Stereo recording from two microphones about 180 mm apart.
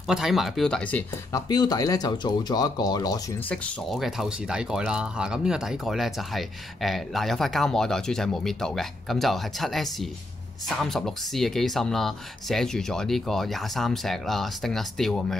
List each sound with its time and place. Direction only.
0.0 s speech: centre (ahead or behind)
1.3 s speech: 20° left (ahead or behind)
3.4 s speech: 5° left (ahead or behind)